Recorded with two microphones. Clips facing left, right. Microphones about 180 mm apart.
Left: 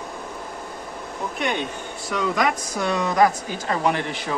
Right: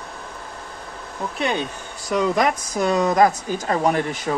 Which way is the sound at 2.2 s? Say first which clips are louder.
Right 3 dB; 40° right (ahead or behind).